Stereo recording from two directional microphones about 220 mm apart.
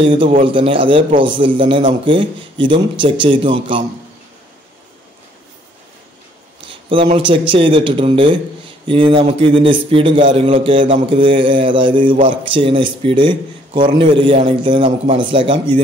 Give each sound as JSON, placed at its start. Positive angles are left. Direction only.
{"t": 0.0, "sound": "a man's voice", "side_deg": -25}
{"t": 7.2, "sound": "a man's voice", "side_deg": -25}